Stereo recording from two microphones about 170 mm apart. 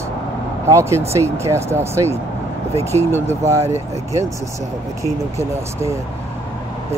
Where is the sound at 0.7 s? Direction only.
15° right (ahead or behind).